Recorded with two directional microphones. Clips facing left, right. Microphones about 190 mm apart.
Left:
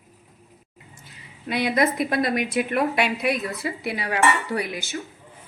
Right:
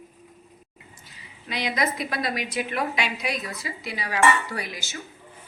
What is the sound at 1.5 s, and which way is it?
A woman's voice, 55° left (ahead or behind).